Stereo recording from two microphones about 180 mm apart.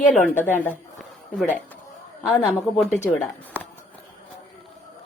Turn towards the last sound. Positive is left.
turn(degrees=10)  # may be behind; listen again after turning